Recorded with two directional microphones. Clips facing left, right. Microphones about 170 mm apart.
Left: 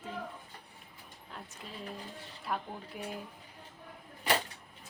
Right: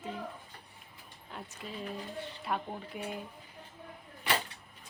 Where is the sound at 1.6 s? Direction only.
Centre (ahead or behind).